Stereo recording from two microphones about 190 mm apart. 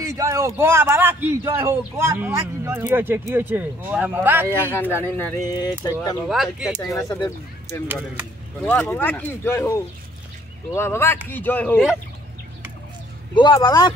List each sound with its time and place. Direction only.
0.0 s a man's voice: 15° right (ahead or behind)
5.0 s speech: 10° left (ahead or behind)
6.2 s speech: centre (ahead or behind)
6.9 s speech: 15° left (ahead or behind)
13.3 s speech: 25° left (ahead or behind)